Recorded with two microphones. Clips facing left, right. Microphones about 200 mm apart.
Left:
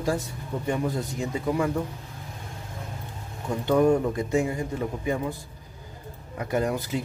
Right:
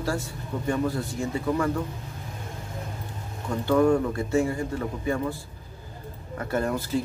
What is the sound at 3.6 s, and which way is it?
Speech, 20° left (ahead or behind).